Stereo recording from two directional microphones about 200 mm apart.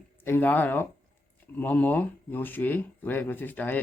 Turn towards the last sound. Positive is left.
turn(degrees=10)  # may be behind; listen again after turning